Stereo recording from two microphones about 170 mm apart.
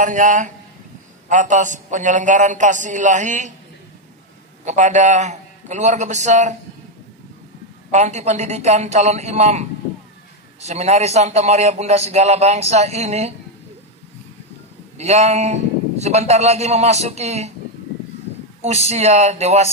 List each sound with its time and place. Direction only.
0.0 s a man's voice: 50° right (ahead or behind)
4.6 s a man's voice: 45° right (ahead or behind)
7.9 s a man's voice: 40° right (ahead or behind)
15.0 s a man's voice: 40° right (ahead or behind)
18.9 s a man's voice: 40° right (ahead or behind)